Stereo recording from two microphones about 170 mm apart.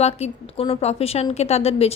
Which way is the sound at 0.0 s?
40° left (ahead or behind).